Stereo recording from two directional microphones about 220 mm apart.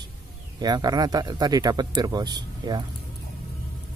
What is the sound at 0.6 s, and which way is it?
Speech, 20° right (ahead or behind).